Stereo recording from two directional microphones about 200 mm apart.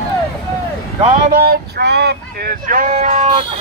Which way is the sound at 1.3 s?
50° right (ahead or behind).